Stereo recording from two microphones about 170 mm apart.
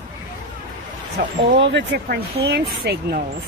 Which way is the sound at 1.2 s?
75° right (ahead or behind).